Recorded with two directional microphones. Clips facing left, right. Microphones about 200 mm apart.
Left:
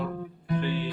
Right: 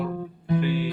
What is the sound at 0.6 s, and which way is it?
Music, 10° right (ahead or behind).